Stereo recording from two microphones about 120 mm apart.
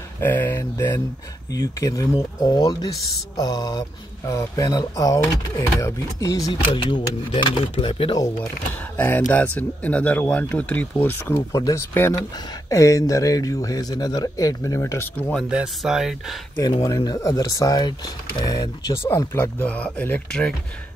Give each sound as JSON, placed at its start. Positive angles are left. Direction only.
{"t": 0.2, "sound": "speech", "side_deg": 15}
{"t": 7.6, "sound": "speech", "side_deg": 50}
{"t": 8.9, "sound": "speech", "side_deg": 15}
{"t": 11.3, "sound": "speech", "side_deg": 25}
{"t": 15.5, "sound": "speech", "side_deg": -5}
{"t": 16.5, "sound": "speech", "side_deg": 35}
{"t": 19.0, "sound": "speech", "side_deg": 20}